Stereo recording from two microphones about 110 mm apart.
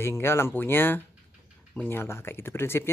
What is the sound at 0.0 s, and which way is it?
Speech, 20° left (ahead or behind).